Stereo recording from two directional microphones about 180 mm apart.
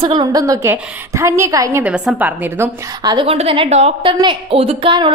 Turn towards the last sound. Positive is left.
turn(degrees=-30)  # may be behind; listen again after turning